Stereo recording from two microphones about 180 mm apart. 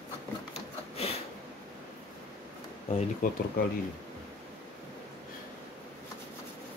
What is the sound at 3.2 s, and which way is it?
Speech, 45° left (ahead or behind).